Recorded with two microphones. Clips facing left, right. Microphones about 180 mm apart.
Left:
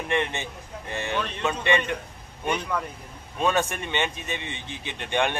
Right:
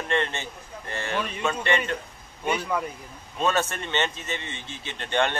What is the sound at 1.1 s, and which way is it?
Speech, 10° right (ahead or behind).